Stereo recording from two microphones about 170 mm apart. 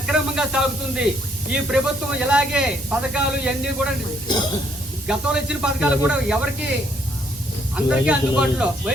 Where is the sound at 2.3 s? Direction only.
5° right (ahead or behind).